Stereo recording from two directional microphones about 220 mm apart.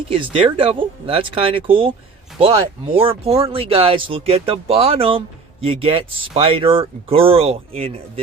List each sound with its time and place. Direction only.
0.1 s speech: 25° right (ahead or behind)